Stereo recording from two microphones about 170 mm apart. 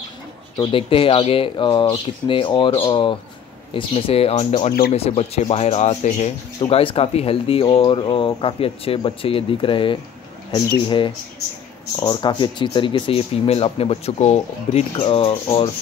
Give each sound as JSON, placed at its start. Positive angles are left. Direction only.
{"t": 0.6, "sound": "speech", "side_deg": 30}